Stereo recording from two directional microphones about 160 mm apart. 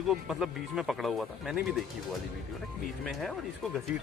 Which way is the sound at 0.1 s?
5° right (ahead or behind).